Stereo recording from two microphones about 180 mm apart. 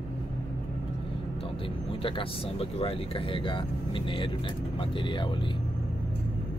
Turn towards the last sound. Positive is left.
turn(degrees=25)  # may be behind; listen again after turning